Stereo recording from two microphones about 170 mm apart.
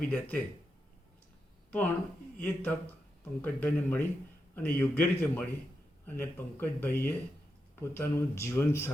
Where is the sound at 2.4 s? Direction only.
10° left (ahead or behind).